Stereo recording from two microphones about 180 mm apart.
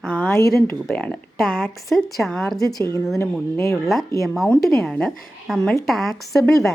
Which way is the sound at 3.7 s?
Centre (ahead or behind).